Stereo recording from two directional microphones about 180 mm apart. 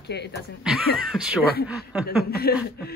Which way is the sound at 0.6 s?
Centre (ahead or behind).